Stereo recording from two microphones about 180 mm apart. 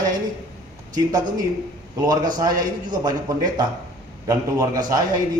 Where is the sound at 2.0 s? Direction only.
25° right (ahead or behind).